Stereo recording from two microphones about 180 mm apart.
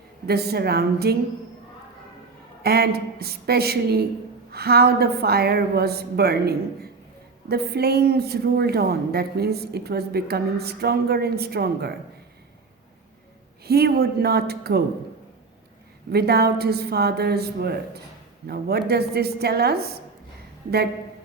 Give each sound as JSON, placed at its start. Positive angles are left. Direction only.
{"t": 0.3, "sound": "a woman's voice", "side_deg": -60}
{"t": 2.6, "sound": "a woman's voice", "side_deg": -60}
{"t": 13.7, "sound": "a woman's voice", "side_deg": -60}
{"t": 16.1, "sound": "a woman's voice", "side_deg": -60}